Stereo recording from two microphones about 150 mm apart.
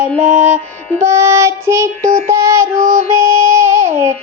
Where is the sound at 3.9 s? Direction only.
20° right (ahead or behind).